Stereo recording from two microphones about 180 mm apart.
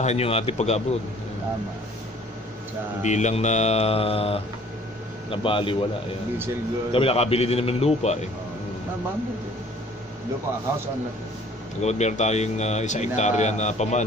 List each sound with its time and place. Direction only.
0.0 s speech: 35° left (ahead or behind)
3.0 s a man's voice: 40° left (ahead or behind)
6.9 s speech: 30° left (ahead or behind)
11.8 s speech: 40° left (ahead or behind)